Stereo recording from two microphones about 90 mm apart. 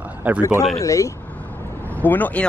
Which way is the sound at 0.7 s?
35° left (ahead or behind).